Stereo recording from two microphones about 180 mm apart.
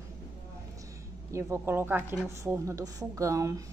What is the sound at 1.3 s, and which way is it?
A woman's voice, 15° right (ahead or behind).